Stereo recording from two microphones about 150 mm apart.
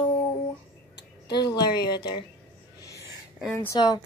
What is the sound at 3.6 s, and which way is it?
Speech, 25° left (ahead or behind).